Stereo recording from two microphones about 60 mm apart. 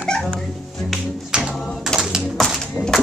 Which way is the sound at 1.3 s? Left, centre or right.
Centre.